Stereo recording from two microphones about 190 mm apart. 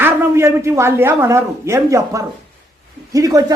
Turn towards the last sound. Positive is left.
turn(degrees=-20)  # may be behind; listen again after turning